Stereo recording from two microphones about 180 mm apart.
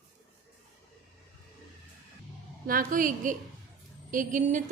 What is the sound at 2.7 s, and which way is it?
A woman's voice, 50° right (ahead or behind).